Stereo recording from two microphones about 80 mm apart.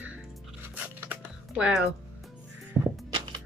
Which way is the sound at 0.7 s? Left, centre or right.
Centre.